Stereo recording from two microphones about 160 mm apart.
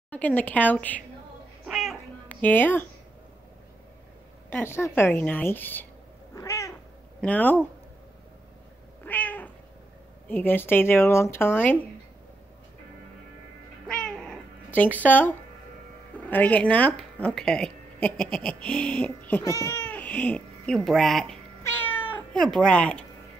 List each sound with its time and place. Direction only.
0.1 s speech: 10° left (ahead or behind)
1.7 s cat: centre (ahead or behind)
2.2 s speech: 10° left (ahead or behind)
4.5 s speech: 15° left (ahead or behind)
6.3 s cat: 20° left (ahead or behind)
7.2 s speech: 10° left (ahead or behind)
9.0 s cat: 10° left (ahead or behind)
10.2 s speech: 10° left (ahead or behind)
13.8 s cat: 5° left (ahead or behind)
16.3 s a woman's voice: 10° left (ahead or behind)
19.4 s speech: 20° left (ahead or behind); by 21.4 s centre (ahead or behind)
21.6 s cat: 10° left (ahead or behind)